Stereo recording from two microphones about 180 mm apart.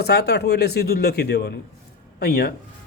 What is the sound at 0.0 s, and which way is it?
Speech, 65° left (ahead or behind).